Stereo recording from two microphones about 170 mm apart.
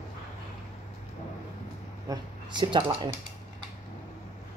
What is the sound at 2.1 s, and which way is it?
Speech, 25° right (ahead or behind).